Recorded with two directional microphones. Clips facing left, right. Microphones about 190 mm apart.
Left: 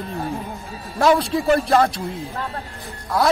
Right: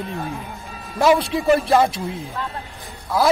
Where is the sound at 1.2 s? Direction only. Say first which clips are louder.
Right 1 dB; centre (ahead or behind).